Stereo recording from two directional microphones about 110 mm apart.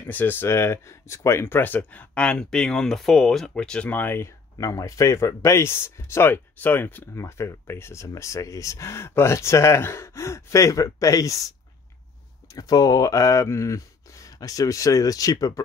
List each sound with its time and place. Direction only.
0.0 s speech: 15° left (ahead or behind)
12.5 s speech: 35° left (ahead or behind)